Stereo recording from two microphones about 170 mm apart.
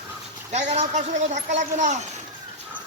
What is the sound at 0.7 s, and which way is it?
A woman's voice, 45° right (ahead or behind).